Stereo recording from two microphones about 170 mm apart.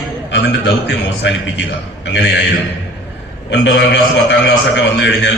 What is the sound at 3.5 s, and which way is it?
A man's voice, 90° left.